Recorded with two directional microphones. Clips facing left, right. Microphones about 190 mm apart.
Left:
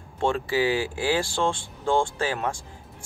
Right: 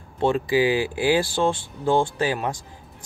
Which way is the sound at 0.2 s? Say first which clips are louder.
Right 4 dB; 15° right (ahead or behind).